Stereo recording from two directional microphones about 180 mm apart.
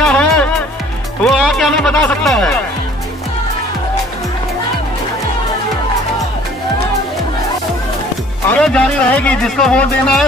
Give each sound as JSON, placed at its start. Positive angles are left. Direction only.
{"t": 0.0, "sound": "music", "side_deg": 5}
{"t": 1.2, "sound": "speech", "side_deg": 0}
{"t": 8.5, "sound": "speech", "side_deg": 5}